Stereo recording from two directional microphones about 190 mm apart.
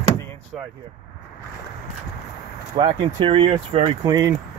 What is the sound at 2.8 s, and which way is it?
Speech, 25° right (ahead or behind).